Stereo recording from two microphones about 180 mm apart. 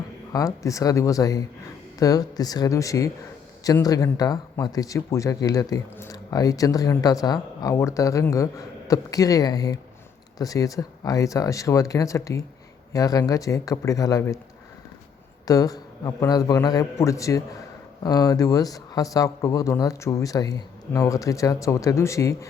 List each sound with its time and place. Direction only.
0.3 s speech: 20° left (ahead or behind)
15.4 s speech: 20° left (ahead or behind)